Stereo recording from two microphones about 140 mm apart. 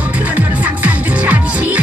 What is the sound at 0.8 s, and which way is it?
Music, 10° right (ahead or behind).